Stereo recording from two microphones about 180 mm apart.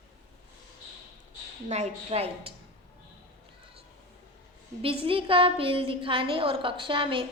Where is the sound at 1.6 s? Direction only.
40° right (ahead or behind).